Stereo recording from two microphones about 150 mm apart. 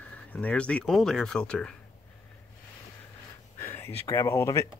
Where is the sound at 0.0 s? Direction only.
10° left (ahead or behind).